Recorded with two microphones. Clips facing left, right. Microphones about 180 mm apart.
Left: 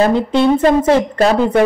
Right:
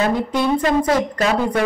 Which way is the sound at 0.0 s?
25° left (ahead or behind).